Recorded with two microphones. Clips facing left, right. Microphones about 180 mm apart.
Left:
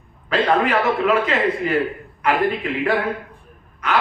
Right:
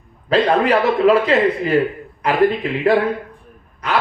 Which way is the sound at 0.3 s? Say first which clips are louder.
Right 3 dB; 35° right (ahead or behind).